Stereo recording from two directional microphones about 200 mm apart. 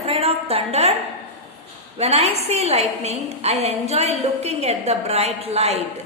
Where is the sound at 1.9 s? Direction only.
30° right (ahead or behind).